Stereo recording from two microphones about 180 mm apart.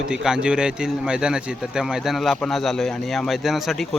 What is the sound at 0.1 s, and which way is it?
A man's voice, 5° right (ahead or behind).